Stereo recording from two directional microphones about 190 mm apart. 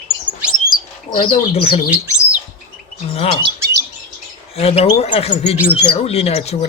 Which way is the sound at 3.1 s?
30° left (ahead or behind).